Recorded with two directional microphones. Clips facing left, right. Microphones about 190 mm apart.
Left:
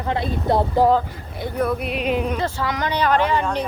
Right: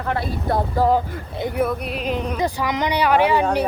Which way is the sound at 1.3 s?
20° right (ahead or behind).